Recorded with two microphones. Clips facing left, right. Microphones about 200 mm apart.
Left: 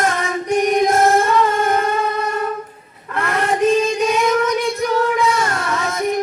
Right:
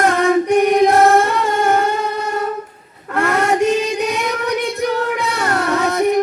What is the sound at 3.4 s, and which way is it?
Child singing, 70° right (ahead or behind).